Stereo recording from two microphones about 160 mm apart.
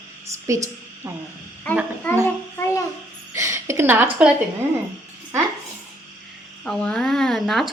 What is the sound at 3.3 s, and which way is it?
A woman's voice, 20° right (ahead or behind).